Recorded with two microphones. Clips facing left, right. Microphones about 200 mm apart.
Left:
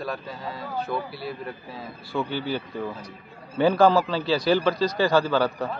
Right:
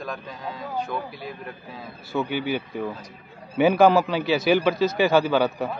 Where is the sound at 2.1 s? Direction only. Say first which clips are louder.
Right 2 dB; 20° right (ahead or behind).